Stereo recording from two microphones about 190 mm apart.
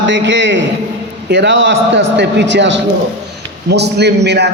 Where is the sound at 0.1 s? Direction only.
70° right (ahead or behind).